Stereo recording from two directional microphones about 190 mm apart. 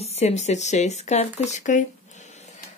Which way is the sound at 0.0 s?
35° left (ahead or behind).